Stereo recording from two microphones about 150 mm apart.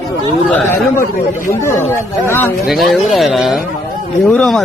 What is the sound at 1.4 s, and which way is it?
Speech, 15° left (ahead or behind).